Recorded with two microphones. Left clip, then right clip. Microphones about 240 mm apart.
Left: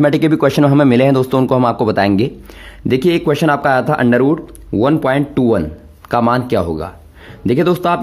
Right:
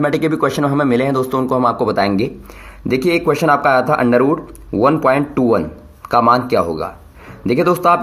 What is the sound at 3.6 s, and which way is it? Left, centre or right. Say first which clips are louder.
Speech: right 1 dB; left.